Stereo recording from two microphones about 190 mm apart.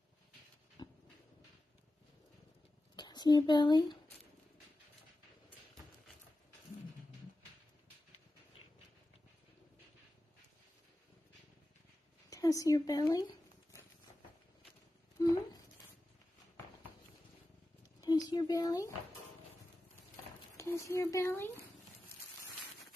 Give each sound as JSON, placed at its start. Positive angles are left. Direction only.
{"t": 0.8, "sound": "dog", "side_deg": 20}
{"t": 3.0, "sound": "speech", "side_deg": 20}
{"t": 12.3, "sound": "speech", "side_deg": 20}
{"t": 15.2, "sound": "a sound", "side_deg": 15}
{"t": 18.0, "sound": "speech", "side_deg": 20}
{"t": 20.5, "sound": "speech", "side_deg": 15}